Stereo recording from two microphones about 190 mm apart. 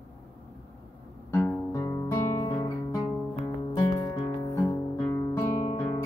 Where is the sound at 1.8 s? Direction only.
15° left (ahead or behind).